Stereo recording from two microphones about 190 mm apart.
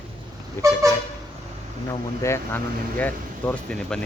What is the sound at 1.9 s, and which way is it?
Speech, 15° left (ahead or behind).